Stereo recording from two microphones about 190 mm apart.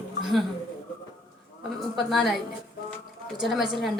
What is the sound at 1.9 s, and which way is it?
Speech, centre (ahead or behind).